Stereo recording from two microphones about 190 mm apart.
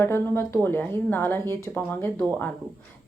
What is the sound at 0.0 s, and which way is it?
Speech, 10° left (ahead or behind).